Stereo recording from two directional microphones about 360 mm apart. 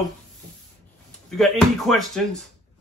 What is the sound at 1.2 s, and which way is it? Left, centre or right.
Speech, centre.